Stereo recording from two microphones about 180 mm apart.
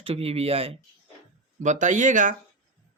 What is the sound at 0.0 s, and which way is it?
Speech, 30° right (ahead or behind).